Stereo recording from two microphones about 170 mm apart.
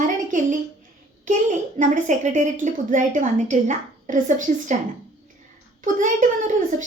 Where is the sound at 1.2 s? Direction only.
50° right (ahead or behind).